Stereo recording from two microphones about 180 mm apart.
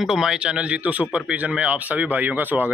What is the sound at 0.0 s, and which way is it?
Speech, 5° right (ahead or behind).